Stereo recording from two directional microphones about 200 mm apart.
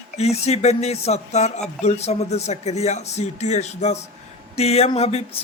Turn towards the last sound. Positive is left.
turn(degrees=30)  # may be behind; listen again after turning